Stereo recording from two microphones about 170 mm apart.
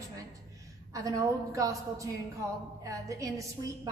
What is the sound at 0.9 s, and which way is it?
A woman's voice, 20° right (ahead or behind).